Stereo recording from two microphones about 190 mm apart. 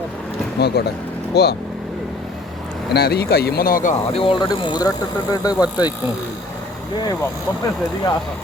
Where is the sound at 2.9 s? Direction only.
55° left (ahead or behind).